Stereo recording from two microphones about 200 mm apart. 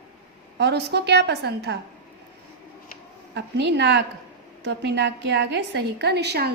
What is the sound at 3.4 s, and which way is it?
A woman's voice, 60° right (ahead or behind).